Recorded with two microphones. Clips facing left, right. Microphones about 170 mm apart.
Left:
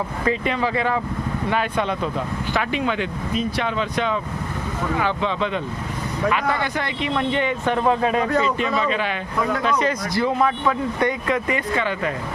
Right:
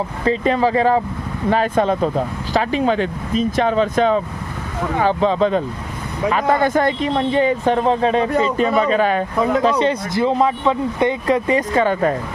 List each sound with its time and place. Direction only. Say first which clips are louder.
0.3 s speech: right 6 dB; 35° right (ahead or behind)
9.4 s speech: right 4 dB; 30° right (ahead or behind)